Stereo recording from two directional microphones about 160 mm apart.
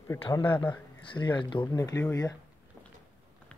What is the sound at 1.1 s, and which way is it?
Speech, 30° left (ahead or behind).